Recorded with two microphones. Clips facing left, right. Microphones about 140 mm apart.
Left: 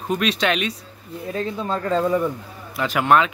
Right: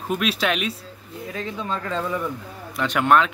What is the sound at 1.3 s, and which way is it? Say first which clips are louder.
Speech: left 4 dB; 35° left (ahead or behind).